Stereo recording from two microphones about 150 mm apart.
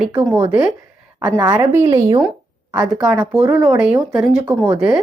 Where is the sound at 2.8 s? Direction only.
5° right (ahead or behind).